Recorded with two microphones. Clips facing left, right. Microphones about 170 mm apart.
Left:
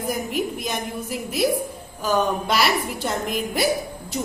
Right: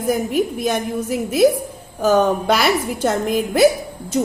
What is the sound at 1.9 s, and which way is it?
Speech, 50° right (ahead or behind).